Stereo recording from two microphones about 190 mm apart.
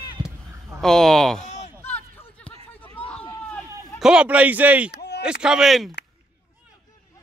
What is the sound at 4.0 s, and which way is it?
Speech, 5° right (ahead or behind).